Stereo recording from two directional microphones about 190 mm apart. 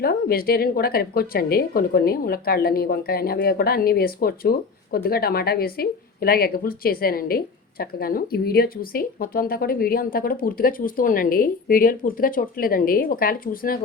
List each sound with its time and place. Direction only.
0.0 s speech: 55° left (ahead or behind)